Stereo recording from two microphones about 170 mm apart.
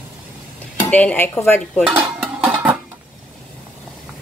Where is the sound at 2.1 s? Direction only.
5° right (ahead or behind).